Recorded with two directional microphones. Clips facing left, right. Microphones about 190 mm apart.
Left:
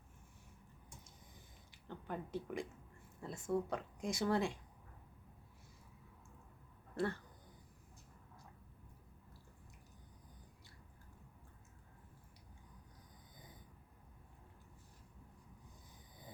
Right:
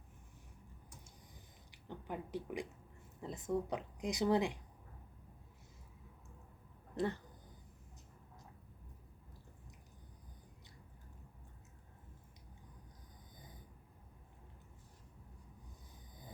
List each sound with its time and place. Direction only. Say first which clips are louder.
1.7 s speech: right 1 dB; 15° right (ahead or behind)
6.9 s speech: right 1 dB; 20° right (ahead or behind)